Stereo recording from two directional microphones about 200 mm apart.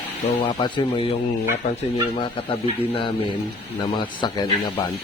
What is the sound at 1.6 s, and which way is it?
Speech, 35° left (ahead or behind).